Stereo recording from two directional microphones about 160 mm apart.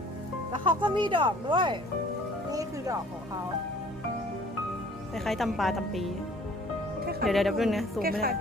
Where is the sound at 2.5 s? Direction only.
20° right (ahead or behind).